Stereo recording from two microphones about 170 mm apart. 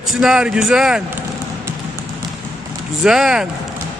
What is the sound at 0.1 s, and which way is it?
Speech, centre (ahead or behind).